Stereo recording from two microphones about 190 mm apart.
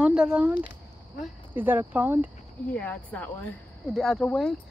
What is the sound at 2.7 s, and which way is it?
Speech, 10° left (ahead or behind).